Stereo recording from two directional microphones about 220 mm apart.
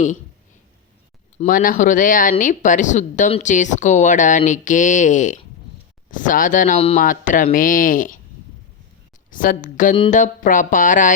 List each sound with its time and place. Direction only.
1.4 s speech: 40° left (ahead or behind)
9.3 s speech: 40° left (ahead or behind)